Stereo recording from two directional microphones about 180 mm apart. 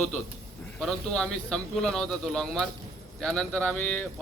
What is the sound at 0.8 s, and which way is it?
A man's voice, 5° left (ahead or behind).